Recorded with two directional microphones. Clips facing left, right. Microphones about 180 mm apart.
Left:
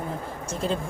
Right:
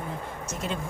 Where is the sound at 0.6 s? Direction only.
35° left (ahead or behind).